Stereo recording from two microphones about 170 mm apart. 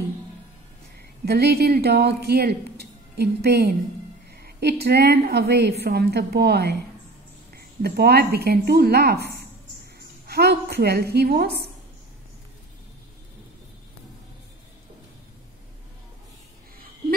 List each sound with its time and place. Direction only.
0.9 s a woman's voice: 70° right (ahead or behind)